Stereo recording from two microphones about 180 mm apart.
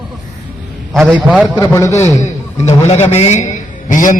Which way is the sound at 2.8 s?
35° left (ahead or behind).